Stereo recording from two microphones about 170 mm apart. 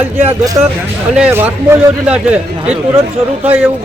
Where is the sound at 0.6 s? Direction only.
20° right (ahead or behind).